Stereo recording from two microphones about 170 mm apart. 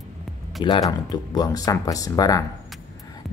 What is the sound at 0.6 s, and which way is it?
Speech, 25° left (ahead or behind).